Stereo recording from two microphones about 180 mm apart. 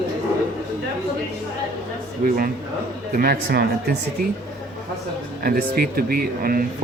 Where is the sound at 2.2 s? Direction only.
55° right (ahead or behind).